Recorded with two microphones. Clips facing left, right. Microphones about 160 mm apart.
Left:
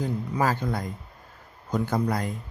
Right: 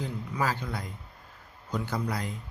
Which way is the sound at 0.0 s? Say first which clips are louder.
Left 5 dB; 45° left (ahead or behind).